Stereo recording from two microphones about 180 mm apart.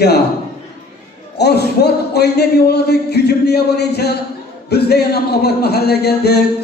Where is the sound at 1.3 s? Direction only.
65° left (ahead or behind).